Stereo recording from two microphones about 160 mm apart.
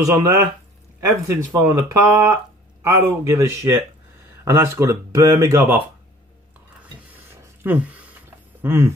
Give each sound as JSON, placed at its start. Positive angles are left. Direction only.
{"t": 0.0, "sound": "speech", "side_deg": -20}
{"t": 7.6, "sound": "speech", "side_deg": -10}